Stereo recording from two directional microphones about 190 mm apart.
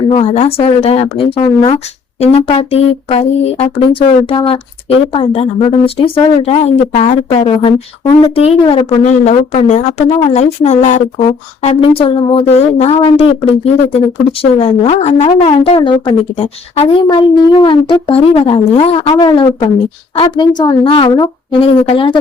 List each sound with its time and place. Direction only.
0.1 s speech: 35° left (ahead or behind)
14.6 s speech: 35° left (ahead or behind)